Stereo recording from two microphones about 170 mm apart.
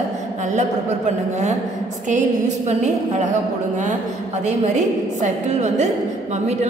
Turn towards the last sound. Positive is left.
turn(degrees=-40)  # may be behind; listen again after turning